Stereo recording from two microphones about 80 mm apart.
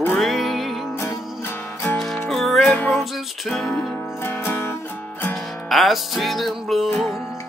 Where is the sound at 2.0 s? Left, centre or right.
Centre.